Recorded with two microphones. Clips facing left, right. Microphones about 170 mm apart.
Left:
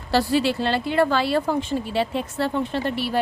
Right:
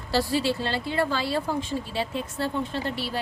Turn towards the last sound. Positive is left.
turn(degrees=65)  # may be behind; listen again after turning